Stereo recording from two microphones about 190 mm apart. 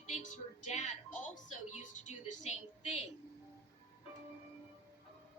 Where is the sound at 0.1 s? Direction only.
40° left (ahead or behind).